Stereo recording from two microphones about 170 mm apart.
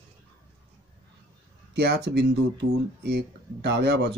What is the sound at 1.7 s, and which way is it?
Speech, 80° right.